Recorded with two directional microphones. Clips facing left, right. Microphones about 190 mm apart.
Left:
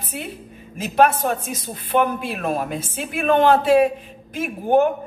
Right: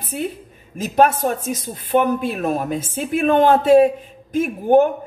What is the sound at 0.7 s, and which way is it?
Speech, 45° right (ahead or behind).